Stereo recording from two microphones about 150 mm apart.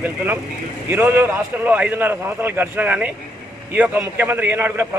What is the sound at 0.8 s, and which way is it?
A man's voice, 15° right (ahead or behind).